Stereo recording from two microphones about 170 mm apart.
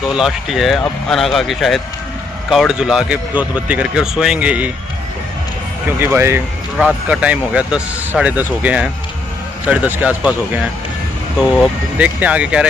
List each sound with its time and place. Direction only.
0.1 s speech: centre (ahead or behind)
5.9 s speech: 10° right (ahead or behind)